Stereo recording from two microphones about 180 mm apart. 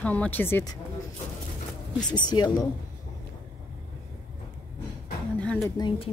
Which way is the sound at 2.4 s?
25° left (ahead or behind).